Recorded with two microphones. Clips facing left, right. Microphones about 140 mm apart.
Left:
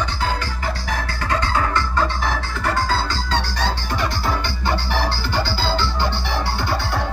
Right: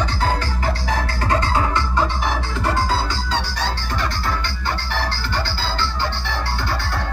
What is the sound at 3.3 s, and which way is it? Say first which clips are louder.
Music: left 3 dB; 5° right (ahead or behind).